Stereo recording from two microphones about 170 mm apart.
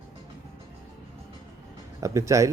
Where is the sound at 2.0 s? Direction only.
20° right (ahead or behind).